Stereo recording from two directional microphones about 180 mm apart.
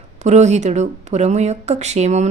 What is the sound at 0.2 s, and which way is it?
A woman's voice, 40° right (ahead or behind).